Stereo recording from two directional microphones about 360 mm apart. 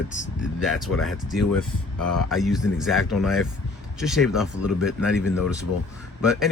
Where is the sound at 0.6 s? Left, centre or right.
Centre.